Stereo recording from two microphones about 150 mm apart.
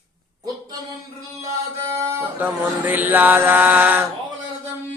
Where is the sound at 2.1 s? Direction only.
15° right (ahead or behind).